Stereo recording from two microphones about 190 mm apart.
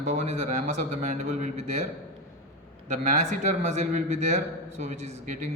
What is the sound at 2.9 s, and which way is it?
A man's voice, 40° right (ahead or behind).